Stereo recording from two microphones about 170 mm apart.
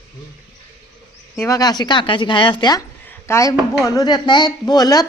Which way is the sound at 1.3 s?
15° left (ahead or behind).